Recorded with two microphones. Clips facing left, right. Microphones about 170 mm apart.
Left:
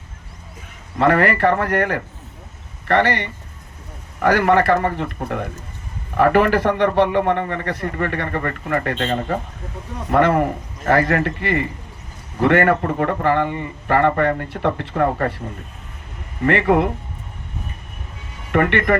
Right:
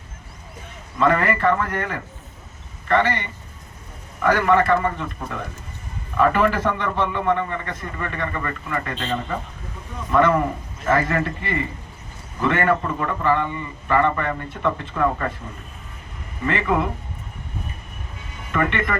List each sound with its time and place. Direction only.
0.9 s a man's voice: 70° left (ahead or behind)
16.5 s a man's voice: 65° left (ahead or behind)
18.5 s a man's voice: 65° left (ahead or behind)